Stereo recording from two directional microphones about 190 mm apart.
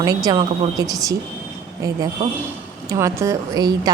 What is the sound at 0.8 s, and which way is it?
Speech, 20° right (ahead or behind).